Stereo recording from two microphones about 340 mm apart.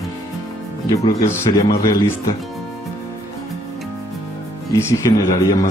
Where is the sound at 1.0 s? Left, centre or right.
Centre.